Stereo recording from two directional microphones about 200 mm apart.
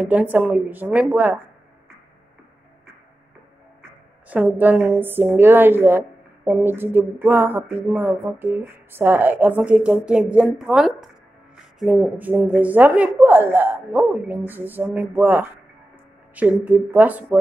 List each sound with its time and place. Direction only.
0.0 s a woman's voice: 10° right (ahead or behind)
4.3 s a woman's voice: 5° right (ahead or behind)